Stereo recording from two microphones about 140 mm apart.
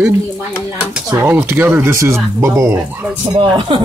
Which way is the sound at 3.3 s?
35° right (ahead or behind).